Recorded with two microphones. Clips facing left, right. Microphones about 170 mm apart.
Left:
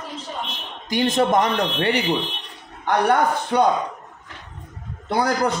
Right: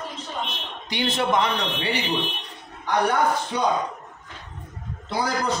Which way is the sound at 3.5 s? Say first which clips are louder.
Left 11 dB; 60° left (ahead or behind).